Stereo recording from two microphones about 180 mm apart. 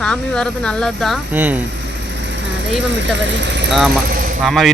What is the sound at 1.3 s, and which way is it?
Speech, 10° right (ahead or behind).